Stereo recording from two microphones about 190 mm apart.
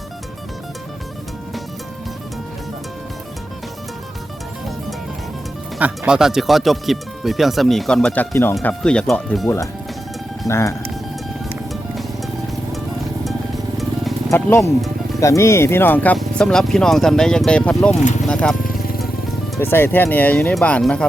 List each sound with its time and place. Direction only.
5.8 s speech: 5° right (ahead or behind)
10.4 s speech: 15° left (ahead or behind)
11.4 s music: centre (ahead or behind)
14.3 s speech: 15° left (ahead or behind)
19.5 s speech: 10° left (ahead or behind)